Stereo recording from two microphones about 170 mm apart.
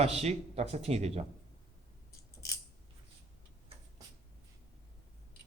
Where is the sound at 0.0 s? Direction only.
40° right (ahead or behind).